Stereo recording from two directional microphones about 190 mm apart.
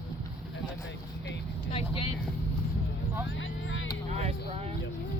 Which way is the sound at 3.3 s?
80° left.